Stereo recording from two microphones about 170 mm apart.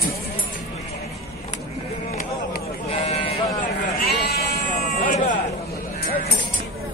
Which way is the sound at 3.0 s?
35° left (ahead or behind).